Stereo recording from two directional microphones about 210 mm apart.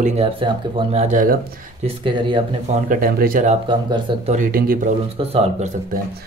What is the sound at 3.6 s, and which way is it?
Speech, 25° right (ahead or behind).